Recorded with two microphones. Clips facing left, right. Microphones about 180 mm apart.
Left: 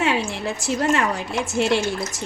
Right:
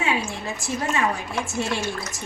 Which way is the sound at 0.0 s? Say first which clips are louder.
Left 4 dB; 80° left.